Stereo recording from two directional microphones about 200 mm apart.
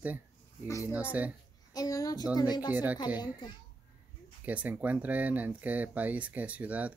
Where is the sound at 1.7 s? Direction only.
20° left (ahead or behind).